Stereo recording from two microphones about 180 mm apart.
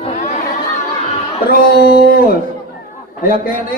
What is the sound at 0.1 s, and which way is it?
Chatter, 45° left (ahead or behind).